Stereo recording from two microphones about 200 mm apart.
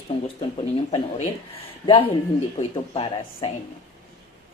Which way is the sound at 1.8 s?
25° left (ahead or behind).